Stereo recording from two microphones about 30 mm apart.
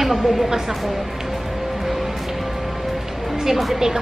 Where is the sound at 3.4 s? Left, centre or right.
Centre.